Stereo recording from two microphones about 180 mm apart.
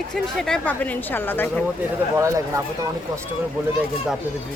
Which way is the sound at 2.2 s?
15° right (ahead or behind).